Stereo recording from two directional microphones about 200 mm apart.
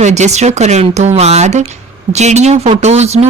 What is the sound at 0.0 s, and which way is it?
A woman's voice, 35° right (ahead or behind).